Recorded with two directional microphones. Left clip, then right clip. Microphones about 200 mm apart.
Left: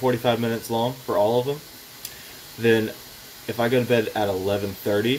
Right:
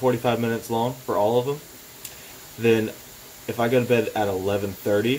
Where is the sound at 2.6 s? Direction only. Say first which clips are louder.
Even; centre (ahead or behind).